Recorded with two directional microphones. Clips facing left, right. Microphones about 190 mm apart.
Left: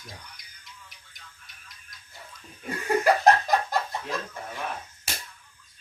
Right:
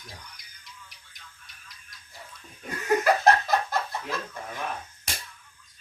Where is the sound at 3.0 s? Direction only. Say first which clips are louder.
Left 2 dB; 15° left (ahead or behind).